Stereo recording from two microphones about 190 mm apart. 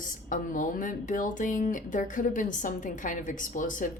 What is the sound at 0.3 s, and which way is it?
Speech, 45° left (ahead or behind).